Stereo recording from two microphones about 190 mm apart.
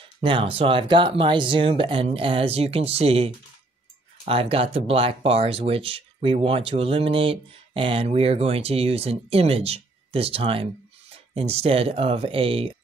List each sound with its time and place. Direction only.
0.0 s speech: 25° right (ahead or behind)